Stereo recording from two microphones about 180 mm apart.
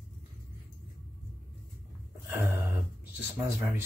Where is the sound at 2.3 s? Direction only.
15° right (ahead or behind).